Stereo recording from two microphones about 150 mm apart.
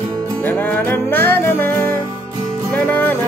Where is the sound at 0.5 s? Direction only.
15° left (ahead or behind).